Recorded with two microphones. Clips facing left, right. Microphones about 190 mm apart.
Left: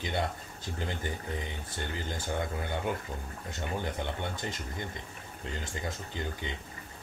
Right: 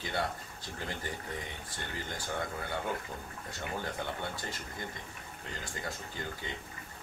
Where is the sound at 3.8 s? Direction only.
20° left (ahead or behind).